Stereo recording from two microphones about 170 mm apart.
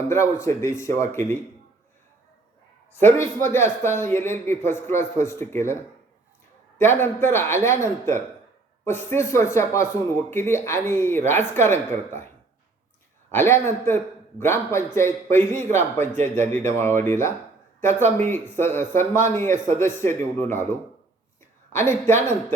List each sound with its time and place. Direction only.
0.1 s speech: 15° left (ahead or behind)
2.9 s speech: 15° left (ahead or behind)
6.7 s speech: 15° left (ahead or behind)
13.3 s speech: 15° left (ahead or behind)